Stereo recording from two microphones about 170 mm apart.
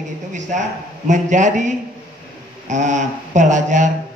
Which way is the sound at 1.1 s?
45° right (ahead or behind).